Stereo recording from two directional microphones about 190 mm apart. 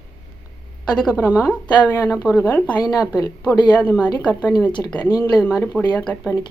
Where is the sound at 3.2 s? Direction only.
20° left (ahead or behind).